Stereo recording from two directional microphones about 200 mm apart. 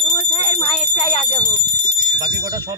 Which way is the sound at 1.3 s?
10° left (ahead or behind).